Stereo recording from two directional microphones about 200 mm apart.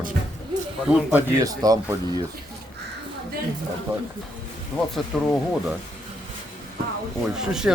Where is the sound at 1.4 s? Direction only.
20° right (ahead or behind).